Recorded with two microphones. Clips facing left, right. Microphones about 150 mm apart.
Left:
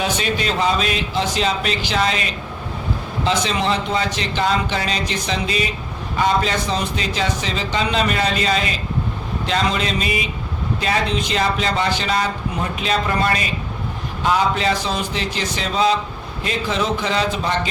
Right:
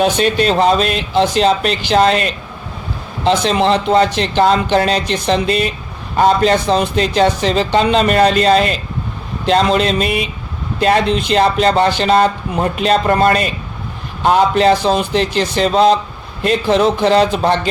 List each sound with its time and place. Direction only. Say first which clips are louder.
0.0 s speech: right 8 dB; 60° right (ahead or behind)
3.2 s speech: right 7 dB; 65° right (ahead or behind)